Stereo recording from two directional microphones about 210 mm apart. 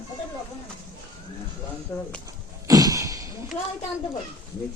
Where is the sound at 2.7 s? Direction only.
15° right (ahead or behind).